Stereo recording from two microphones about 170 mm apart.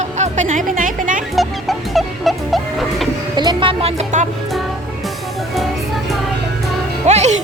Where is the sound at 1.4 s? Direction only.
Centre (ahead or behind).